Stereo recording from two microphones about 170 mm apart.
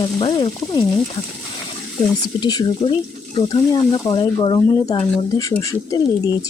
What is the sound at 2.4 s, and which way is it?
Speech, 25° left (ahead or behind).